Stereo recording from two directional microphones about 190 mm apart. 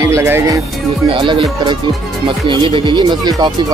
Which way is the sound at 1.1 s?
25° right (ahead or behind).